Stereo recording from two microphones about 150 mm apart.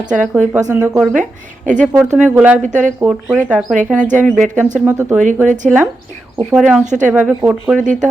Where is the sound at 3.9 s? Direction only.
55° right (ahead or behind).